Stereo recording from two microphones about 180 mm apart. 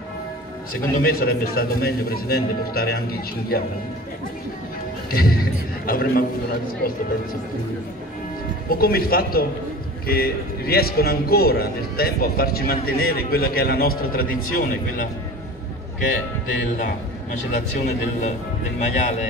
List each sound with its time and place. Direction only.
0.7 s a man's voice: 55° left (ahead or behind)
5.1 s a man's voice: 55° left (ahead or behind)
8.6 s a man's voice: 55° left (ahead or behind)
16.7 s a man's voice: 45° left (ahead or behind)
18.8 s speech: 40° left (ahead or behind)